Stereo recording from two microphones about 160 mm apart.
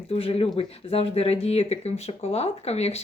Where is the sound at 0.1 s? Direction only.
40° left (ahead or behind).